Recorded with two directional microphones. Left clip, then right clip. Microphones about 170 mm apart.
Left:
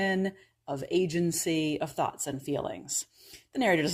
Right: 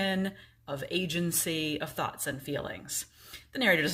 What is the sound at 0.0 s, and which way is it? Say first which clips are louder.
A woman's voice: left 2 dB; 40° left (ahead or behind).